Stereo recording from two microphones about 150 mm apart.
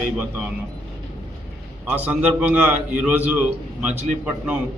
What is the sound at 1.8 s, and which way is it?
A man's voice, 10° right (ahead or behind).